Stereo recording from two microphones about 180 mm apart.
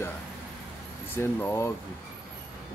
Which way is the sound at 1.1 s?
10° left (ahead or behind).